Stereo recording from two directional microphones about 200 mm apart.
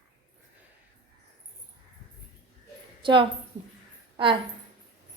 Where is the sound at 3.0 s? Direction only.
25° right (ahead or behind).